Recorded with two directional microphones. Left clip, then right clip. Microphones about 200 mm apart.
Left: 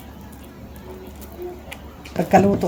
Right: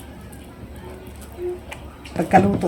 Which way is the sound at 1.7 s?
10° left (ahead or behind).